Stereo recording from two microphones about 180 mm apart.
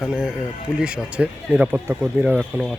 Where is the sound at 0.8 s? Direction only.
5° right (ahead or behind).